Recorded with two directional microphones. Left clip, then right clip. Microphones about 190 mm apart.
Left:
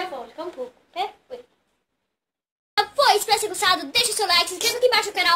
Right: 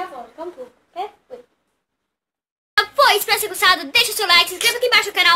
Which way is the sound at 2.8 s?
10° right (ahead or behind).